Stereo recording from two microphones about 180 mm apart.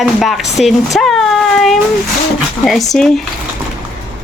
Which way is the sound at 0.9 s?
Centre (ahead or behind).